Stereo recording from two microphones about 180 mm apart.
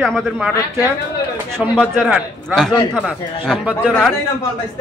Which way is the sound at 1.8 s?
Centre (ahead or behind).